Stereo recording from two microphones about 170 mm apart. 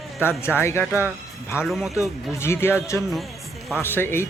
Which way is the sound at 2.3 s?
15° left (ahead or behind).